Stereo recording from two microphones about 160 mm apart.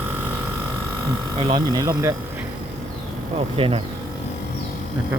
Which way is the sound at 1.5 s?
25° right (ahead or behind).